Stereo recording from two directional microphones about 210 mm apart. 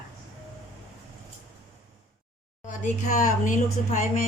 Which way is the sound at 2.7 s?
35° left (ahead or behind).